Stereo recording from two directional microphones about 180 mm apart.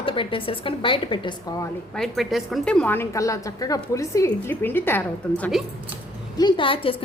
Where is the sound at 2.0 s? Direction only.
Centre (ahead or behind).